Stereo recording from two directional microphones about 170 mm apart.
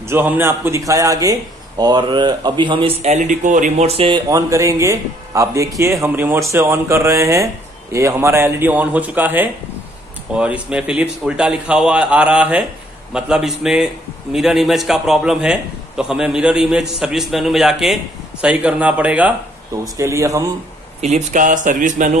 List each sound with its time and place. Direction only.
0.1 s speech: 10° right (ahead or behind); by 4.2 s 35° right (ahead or behind)
4.3 s a man's voice: 20° right (ahead or behind)
21.0 s speech: 45° right (ahead or behind)